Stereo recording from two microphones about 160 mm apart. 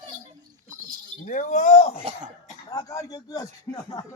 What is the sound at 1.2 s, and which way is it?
Speech, 50° left (ahead or behind).